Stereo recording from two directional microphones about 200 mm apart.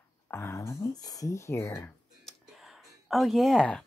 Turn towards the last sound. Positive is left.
turn(degrees=5)  # may be behind; listen again after turning